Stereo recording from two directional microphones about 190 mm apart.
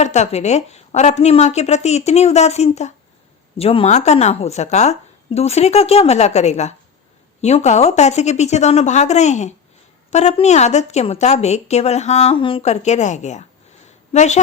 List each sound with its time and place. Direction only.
0.0 s a woman's voice: 35° left (ahead or behind)